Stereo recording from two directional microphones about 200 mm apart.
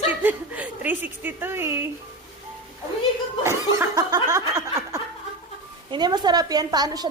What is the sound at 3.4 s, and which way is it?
Snicker, 15° right (ahead or behind).